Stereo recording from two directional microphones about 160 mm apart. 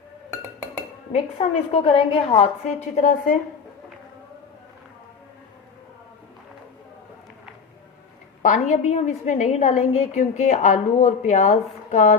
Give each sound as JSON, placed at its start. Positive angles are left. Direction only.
{"t": 1.1, "sound": "a woman's voice", "side_deg": 40}
{"t": 8.4, "sound": "a woman's voice", "side_deg": 50}